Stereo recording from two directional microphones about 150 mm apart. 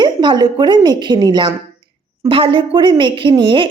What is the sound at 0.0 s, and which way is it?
A woman's voice, 30° right (ahead or behind).